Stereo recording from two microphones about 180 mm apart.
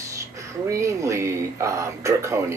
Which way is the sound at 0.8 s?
15° right (ahead or behind).